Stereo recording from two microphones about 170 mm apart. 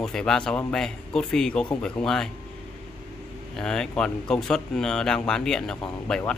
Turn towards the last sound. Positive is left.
turn(degrees=5)  # may be behind; listen again after turning